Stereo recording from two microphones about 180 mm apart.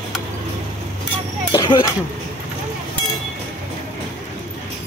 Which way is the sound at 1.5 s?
20° left (ahead or behind).